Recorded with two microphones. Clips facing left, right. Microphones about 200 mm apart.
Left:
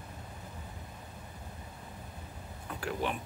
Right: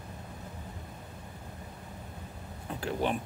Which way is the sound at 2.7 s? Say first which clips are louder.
Right 3 dB; 25° right (ahead or behind).